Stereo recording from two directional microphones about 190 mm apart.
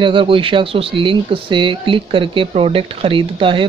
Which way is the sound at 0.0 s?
25° right (ahead or behind).